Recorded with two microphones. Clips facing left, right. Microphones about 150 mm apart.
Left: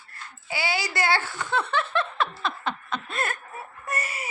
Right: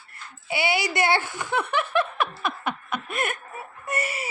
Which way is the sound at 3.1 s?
20° right (ahead or behind).